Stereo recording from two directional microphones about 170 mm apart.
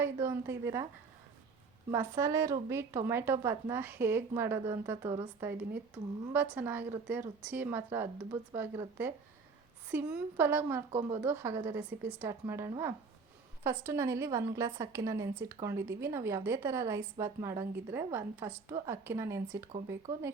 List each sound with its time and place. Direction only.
0.0 s a woman's voice: 15° right (ahead or behind)
1.9 s a woman's voice: 15° right (ahead or behind)